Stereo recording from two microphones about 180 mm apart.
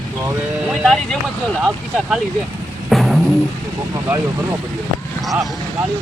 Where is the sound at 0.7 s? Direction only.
Centre (ahead or behind).